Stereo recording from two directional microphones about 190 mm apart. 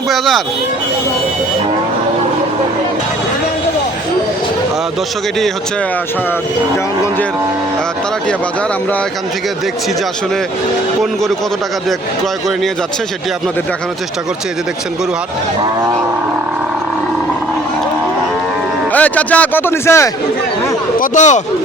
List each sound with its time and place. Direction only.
0.1 s speech: centre (ahead or behind)
18.9 s speech: 10° left (ahead or behind)
21.0 s speech: 40° left (ahead or behind)